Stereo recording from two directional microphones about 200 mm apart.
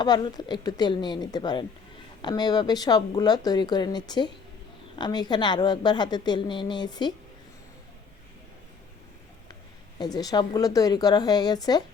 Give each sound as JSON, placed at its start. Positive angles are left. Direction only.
{"t": 0.0, "sound": "a woman's voice", "side_deg": 20}
{"t": 10.0, "sound": "a woman's voice", "side_deg": 20}